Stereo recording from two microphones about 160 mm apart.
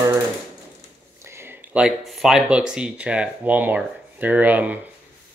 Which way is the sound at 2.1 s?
Centre (ahead or behind).